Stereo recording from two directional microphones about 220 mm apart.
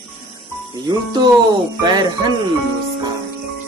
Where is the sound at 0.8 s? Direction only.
20° right (ahead or behind).